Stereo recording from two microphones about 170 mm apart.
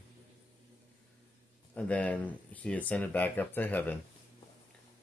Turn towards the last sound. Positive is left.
turn(degrees=10)  # may be behind; listen again after turning